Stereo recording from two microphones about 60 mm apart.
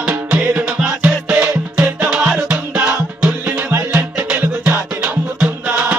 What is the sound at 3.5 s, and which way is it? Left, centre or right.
Music, right.